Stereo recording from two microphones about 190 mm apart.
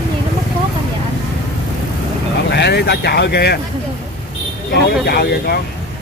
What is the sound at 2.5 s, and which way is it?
Speech, 60° left (ahead or behind).